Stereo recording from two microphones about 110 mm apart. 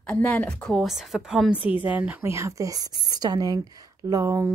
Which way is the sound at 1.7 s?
15° right (ahead or behind).